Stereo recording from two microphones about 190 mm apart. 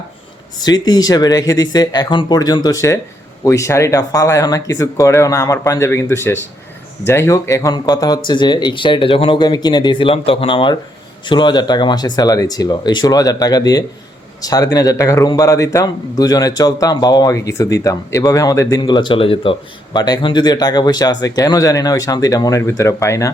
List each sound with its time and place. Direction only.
0.6 s a man's voice: 20° left (ahead or behind)